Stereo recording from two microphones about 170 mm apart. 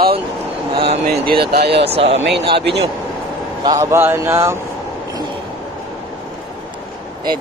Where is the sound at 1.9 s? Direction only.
35° right (ahead or behind).